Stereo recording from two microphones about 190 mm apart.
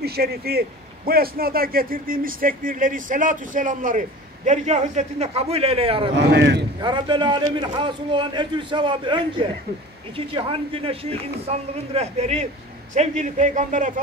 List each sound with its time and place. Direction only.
0.0 s a man's voice: 55° right (ahead or behind); by 6.1 s 30° right (ahead or behind)
6.1 s speech: 65° right (ahead or behind)
6.8 s a man's voice: 25° right (ahead or behind); by 14.0 s 40° right (ahead or behind)